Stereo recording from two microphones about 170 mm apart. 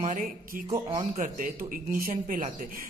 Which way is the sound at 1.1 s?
50° right (ahead or behind).